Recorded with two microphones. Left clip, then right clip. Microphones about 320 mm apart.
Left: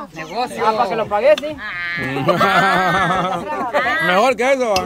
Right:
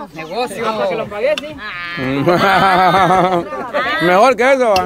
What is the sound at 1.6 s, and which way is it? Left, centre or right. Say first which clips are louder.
Sheep: left 1 dB; right.